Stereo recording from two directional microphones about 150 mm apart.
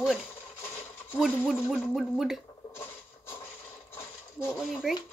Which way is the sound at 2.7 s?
15° left (ahead or behind).